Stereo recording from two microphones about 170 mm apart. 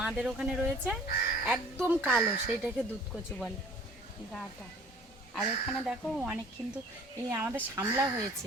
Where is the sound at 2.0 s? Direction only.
5° right (ahead or behind).